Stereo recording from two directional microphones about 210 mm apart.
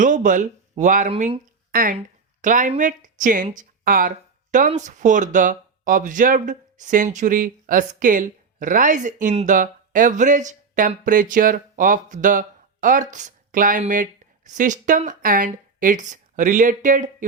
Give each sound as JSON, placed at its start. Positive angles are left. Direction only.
{"t": 0.0, "sound": "speech", "side_deg": -40}